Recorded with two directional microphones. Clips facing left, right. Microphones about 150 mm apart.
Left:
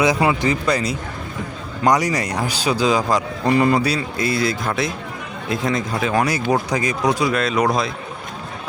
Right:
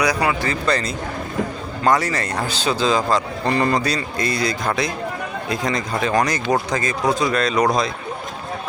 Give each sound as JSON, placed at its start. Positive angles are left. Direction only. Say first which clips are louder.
{"t": 0.0, "sound": "speech", "louder": "left 3 dB", "side_deg": 20}